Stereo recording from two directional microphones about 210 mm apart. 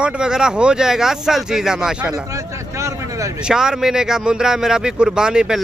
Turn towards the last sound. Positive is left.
turn(degrees=-5)  # may be behind; listen again after turning